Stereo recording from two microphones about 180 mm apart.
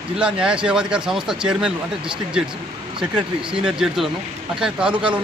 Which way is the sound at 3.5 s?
5° right (ahead or behind).